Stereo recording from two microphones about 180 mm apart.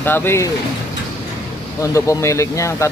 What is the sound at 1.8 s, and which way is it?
Speech, 20° left (ahead or behind).